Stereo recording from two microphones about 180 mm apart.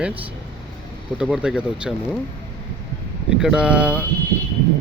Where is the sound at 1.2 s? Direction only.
5° right (ahead or behind).